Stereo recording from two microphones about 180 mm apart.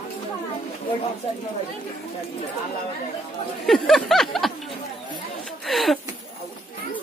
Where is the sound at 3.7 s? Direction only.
Centre (ahead or behind).